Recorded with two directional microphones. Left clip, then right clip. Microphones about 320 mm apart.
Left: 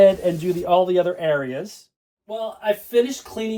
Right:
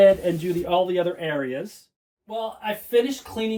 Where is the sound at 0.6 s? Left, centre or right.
Left.